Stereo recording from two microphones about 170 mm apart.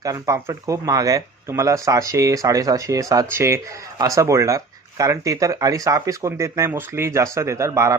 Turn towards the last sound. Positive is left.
turn(degrees=-15)  # may be behind; listen again after turning